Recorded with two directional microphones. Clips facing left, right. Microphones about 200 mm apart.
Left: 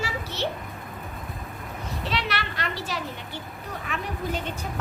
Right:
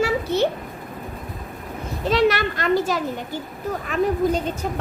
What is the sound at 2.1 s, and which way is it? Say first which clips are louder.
A child's voice: right 13 dB; 45° right (ahead or behind).